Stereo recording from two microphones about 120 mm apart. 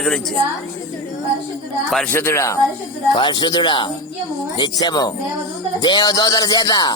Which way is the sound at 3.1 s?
40° left (ahead or behind).